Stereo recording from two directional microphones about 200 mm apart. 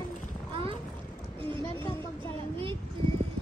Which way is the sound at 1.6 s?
10° left (ahead or behind).